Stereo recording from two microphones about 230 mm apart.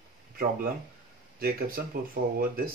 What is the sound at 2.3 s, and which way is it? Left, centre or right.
Speech, right.